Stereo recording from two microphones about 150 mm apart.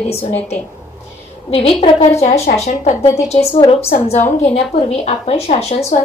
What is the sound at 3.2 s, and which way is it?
A woman's voice, 40° left (ahead or behind).